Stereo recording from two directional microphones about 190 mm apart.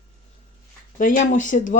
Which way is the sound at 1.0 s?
45° left (ahead or behind).